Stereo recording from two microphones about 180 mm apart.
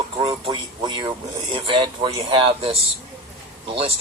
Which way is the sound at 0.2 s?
30° right (ahead or behind).